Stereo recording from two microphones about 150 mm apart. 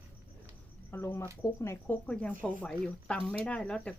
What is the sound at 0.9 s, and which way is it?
Speech, 15° left (ahead or behind).